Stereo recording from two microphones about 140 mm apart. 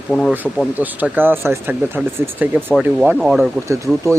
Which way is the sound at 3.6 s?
20° right (ahead or behind).